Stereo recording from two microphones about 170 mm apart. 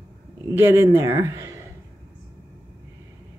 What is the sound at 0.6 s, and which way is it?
Speech, 15° right (ahead or behind).